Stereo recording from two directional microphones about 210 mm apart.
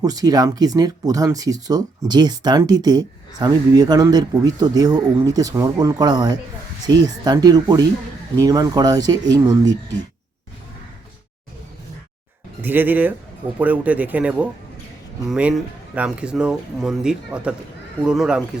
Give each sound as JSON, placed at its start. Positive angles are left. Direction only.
{"t": 0.0, "sound": "speech", "side_deg": -15}
{"t": 12.6, "sound": "speech", "side_deg": -10}